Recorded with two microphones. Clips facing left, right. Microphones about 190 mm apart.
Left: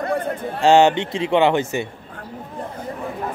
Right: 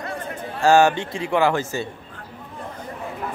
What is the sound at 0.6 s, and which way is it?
A man's voice, 20° left (ahead or behind).